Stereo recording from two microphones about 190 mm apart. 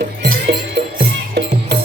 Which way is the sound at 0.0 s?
55° right (ahead or behind).